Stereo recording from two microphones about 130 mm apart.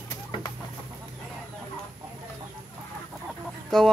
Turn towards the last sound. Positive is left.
turn(degrees=0)  # may be behind; listen again after turning